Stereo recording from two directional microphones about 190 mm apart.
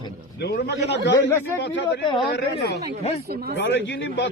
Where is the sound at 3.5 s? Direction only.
65° left (ahead or behind).